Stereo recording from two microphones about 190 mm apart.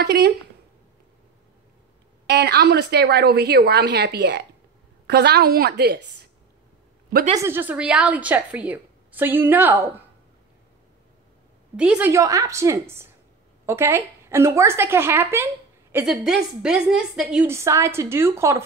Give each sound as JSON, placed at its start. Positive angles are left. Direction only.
{"t": 0.0, "sound": "a woman's voice", "side_deg": -60}
{"t": 2.2, "sound": "a woman's voice", "side_deg": -60}
{"t": 7.3, "sound": "a woman's voice", "side_deg": -10}
{"t": 11.7, "sound": "a woman's voice", "side_deg": -5}
{"t": 12.1, "sound": "a woman's voice", "side_deg": -15}